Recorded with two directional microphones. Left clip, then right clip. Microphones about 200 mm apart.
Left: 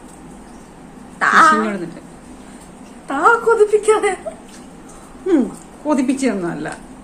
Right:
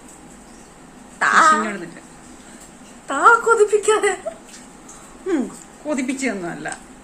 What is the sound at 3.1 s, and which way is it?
A woman's voice, 10° right (ahead or behind).